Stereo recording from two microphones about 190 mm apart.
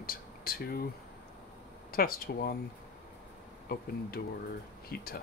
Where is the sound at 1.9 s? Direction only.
50° left (ahead or behind).